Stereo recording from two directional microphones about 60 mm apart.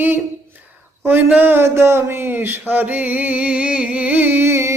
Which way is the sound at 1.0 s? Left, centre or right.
Right.